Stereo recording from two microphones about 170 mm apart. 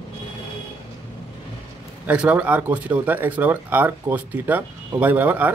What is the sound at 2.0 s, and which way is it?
A man's voice, 10° right (ahead or behind).